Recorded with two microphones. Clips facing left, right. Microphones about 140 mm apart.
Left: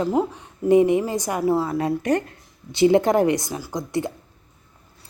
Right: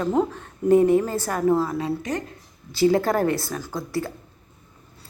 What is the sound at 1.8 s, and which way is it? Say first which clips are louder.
Speech: left 5 dB; 65° left (ahead or behind).